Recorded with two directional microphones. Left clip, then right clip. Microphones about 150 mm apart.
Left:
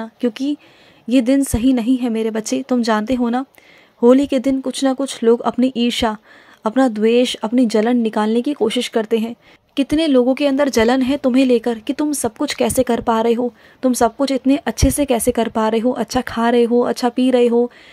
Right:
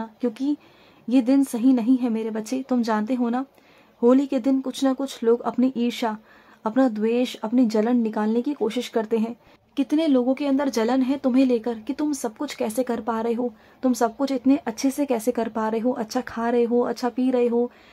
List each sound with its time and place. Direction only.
0.0 s a woman's voice: 25° left (ahead or behind)